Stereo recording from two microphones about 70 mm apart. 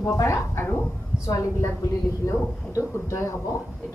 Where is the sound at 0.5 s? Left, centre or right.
Left.